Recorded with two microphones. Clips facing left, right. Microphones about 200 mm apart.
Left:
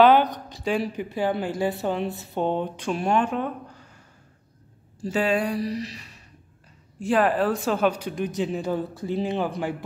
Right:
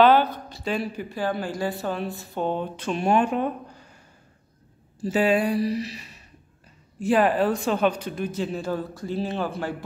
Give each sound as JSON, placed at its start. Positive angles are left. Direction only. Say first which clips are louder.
{"t": 0.0, "sound": "speech", "louder": "left 1 dB", "side_deg": 15}
{"t": 1.6, "sound": "a sound", "louder": "left 2 dB", "side_deg": 20}
{"t": 3.0, "sound": "speech", "louder": "right 2 dB", "side_deg": -10}
{"t": 5.0, "sound": "speech", "louder": "right 2 dB", "side_deg": -5}